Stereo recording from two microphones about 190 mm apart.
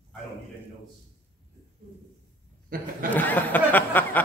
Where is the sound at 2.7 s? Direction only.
50° right (ahead or behind).